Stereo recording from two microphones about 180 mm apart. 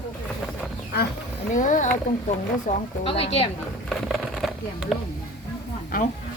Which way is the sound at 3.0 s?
35° left (ahead or behind).